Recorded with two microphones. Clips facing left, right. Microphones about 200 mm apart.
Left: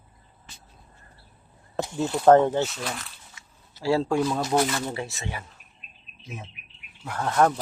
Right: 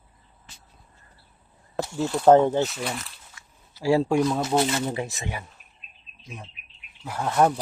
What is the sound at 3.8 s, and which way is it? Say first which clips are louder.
Speech: right 2 dB; 15° right (ahead or behind).